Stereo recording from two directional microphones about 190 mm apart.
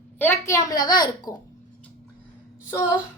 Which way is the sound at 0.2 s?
15° left (ahead or behind).